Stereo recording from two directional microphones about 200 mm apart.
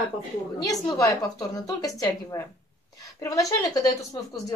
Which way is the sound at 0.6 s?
20° left (ahead or behind).